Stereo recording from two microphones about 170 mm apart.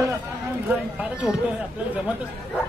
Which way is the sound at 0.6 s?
5° right (ahead or behind).